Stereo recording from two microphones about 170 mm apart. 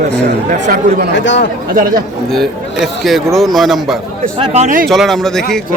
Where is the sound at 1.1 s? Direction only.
90° left.